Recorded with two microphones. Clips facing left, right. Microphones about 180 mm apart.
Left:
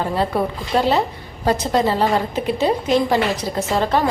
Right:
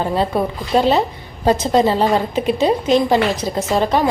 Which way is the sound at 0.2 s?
20° right (ahead or behind).